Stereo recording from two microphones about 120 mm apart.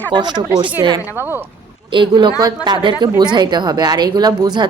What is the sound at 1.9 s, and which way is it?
A woman's voice, 40° right (ahead or behind).